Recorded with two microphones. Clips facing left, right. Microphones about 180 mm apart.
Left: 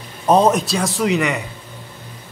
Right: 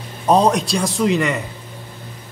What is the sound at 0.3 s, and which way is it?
A man's voice, centre (ahead or behind).